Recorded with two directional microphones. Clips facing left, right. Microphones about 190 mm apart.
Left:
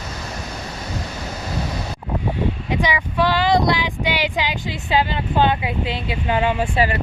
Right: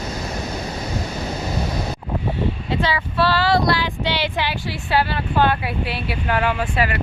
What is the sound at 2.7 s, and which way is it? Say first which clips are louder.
Speech: even; 15° left (ahead or behind).